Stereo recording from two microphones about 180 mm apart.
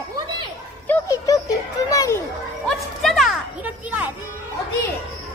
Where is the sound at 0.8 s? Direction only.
20° left (ahead or behind).